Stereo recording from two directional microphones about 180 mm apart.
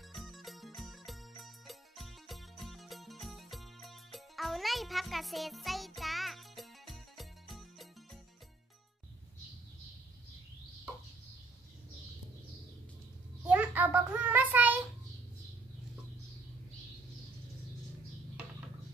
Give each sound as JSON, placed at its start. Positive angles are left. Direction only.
{"t": 0.1, "sound": "music", "side_deg": 0}
{"t": 13.4, "sound": "child singing", "side_deg": -10}